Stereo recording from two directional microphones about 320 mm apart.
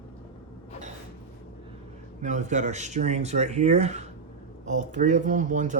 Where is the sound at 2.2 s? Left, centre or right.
Right.